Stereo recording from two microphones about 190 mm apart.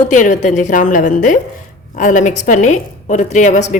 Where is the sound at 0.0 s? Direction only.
40° left (ahead or behind).